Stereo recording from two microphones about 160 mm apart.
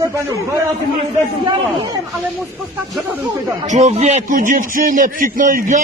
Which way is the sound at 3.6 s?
45° right (ahead or behind).